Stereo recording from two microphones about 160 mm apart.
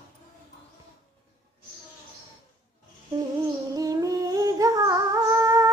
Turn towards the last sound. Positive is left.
turn(degrees=-20)  # may be behind; listen again after turning